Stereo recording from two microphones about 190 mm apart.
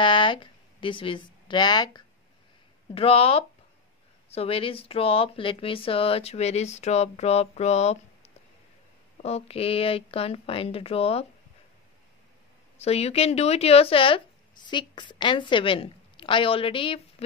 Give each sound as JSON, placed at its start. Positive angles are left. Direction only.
{"t": 0.0, "sound": "speech", "side_deg": 25}
{"t": 12.7, "sound": "a woman's voice", "side_deg": 35}